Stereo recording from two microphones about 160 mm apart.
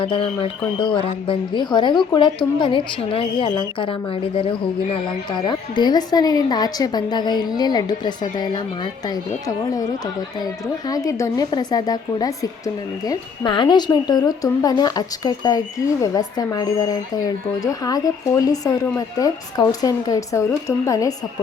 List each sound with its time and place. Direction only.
0.0 s a woman's voice: 30° left (ahead or behind)